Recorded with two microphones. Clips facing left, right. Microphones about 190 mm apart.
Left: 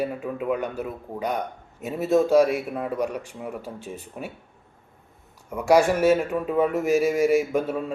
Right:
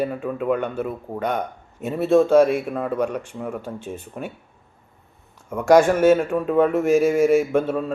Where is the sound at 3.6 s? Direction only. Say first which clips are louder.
Right 4 dB; centre (ahead or behind).